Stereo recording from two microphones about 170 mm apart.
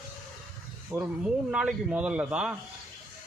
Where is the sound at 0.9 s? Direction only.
10° right (ahead or behind).